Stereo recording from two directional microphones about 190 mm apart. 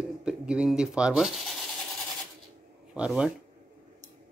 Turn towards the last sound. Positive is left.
turn(degrees=-5)  # may be behind; listen again after turning